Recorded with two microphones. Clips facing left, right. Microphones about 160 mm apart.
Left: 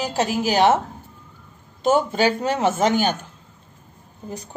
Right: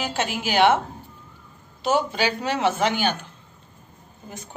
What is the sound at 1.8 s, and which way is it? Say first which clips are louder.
Speech: left 4 dB; 45° left (ahead or behind).